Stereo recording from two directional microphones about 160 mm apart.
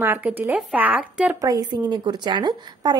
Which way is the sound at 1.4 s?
20° right (ahead or behind).